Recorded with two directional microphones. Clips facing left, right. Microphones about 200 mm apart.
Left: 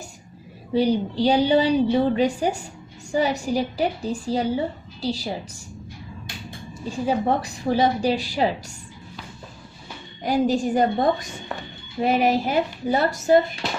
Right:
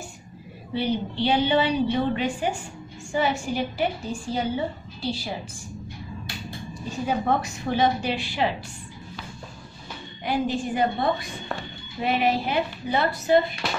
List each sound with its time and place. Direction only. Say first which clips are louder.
0.7 s a woman's voice: left 5 dB; 40° left (ahead or behind)
7.1 s a woman's voice: left 2 dB; 35° left (ahead or behind)
10.2 s a woman's voice: left 5 dB; 40° left (ahead or behind)